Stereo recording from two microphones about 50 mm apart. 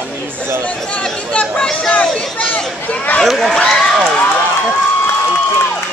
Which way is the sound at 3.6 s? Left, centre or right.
Centre.